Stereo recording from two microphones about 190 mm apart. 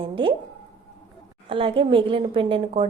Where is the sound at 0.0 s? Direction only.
25° right (ahead or behind).